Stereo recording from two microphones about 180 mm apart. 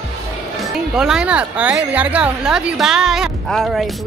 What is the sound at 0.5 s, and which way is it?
A woman's voice, centre (ahead or behind).